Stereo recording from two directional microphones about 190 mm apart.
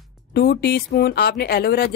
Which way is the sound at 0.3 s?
55° left (ahead or behind).